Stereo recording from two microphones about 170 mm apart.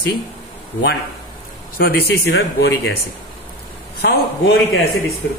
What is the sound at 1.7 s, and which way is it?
Speech, 65° left (ahead or behind).